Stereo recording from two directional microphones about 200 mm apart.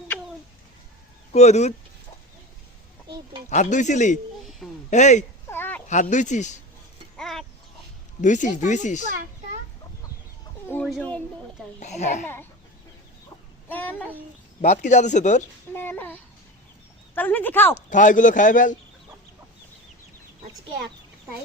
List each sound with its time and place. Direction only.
1.3 s speech: 35° left (ahead or behind)
3.5 s speech: 35° left (ahead or behind)
5.5 s a sound: 10° left (ahead or behind)
5.9 s speech: 40° left (ahead or behind)
7.2 s livestock: centre (ahead or behind)
8.2 s speech: 40° left (ahead or behind)
10.7 s a sound: 5° left (ahead or behind)
11.8 s speech: 35° left (ahead or behind)
12.2 s speech: 10° left (ahead or behind)
13.7 s babbling: 10° left (ahead or behind)
14.6 s speech: 35° left (ahead or behind)
15.7 s speech: 10° left (ahead or behind)
17.8 s speech: 40° left (ahead or behind)